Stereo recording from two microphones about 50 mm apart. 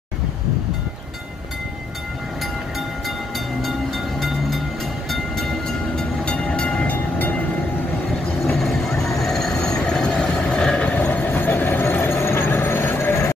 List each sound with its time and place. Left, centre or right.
3.6 s train: centre
6.2 s train: left
6.9 s train: left
8.4 s vehicle: centre
9.2 s train: centre
11.0 s vehicle: left